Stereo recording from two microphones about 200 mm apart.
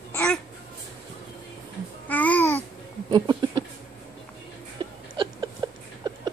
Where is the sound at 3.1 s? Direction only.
20° right (ahead or behind).